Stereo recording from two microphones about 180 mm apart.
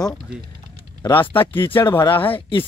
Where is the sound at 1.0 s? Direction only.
15° left (ahead or behind).